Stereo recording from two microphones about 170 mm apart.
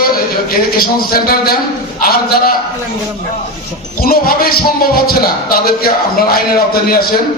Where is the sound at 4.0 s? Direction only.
60° left (ahead or behind).